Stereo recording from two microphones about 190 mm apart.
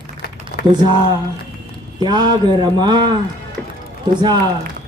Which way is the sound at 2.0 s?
20° right (ahead or behind).